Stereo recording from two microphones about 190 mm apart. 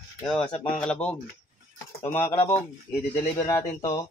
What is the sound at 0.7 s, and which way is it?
Speech, 5° left (ahead or behind).